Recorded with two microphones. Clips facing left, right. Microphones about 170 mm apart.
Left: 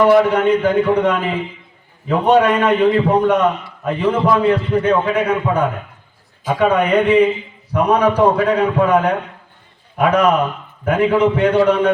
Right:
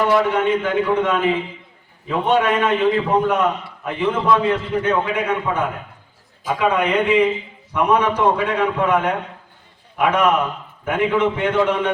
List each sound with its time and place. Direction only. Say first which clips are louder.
0.1 s a man's voice: left 5 dB; 35° left (ahead or behind)